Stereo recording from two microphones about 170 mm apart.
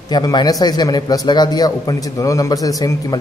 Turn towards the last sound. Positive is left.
turn(degrees=20)  # may be behind; listen again after turning